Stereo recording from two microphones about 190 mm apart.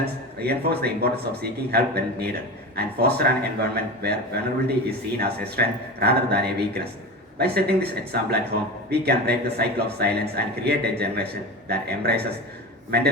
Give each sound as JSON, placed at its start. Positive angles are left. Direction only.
{"t": 0.0, "sound": "speech", "side_deg": -55}